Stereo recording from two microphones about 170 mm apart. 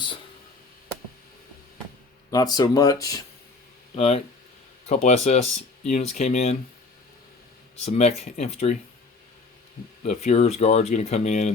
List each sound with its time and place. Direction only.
2.3 s speech: 20° left (ahead or behind)
3.9 s speech: 35° left (ahead or behind)
7.9 s speech: 40° left (ahead or behind)
10.0 s speech: 40° left (ahead or behind)